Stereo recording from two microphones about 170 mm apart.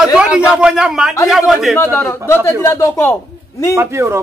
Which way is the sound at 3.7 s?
15° right (ahead or behind).